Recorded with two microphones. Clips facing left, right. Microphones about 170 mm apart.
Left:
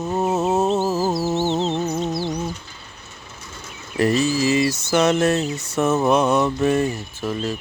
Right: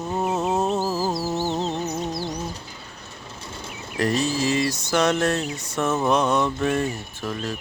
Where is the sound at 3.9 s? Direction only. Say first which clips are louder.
Left 4 dB; 5° left (ahead or behind).